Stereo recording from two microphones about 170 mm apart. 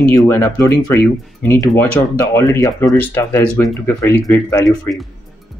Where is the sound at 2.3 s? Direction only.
15° left (ahead or behind).